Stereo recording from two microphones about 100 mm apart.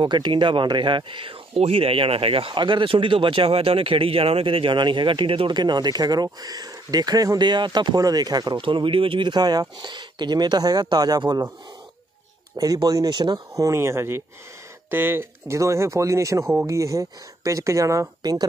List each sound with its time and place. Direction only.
0.0 s speech: 50° right (ahead or behind)
5.6 s speech: 45° right (ahead or behind)
12.5 s speech: 40° right (ahead or behind)